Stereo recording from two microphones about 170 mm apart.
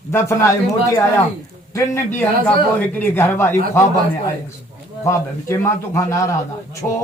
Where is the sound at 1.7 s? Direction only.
20° left (ahead or behind).